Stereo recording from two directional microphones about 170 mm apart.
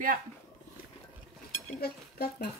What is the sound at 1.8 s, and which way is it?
Speech, 65° left (ahead or behind).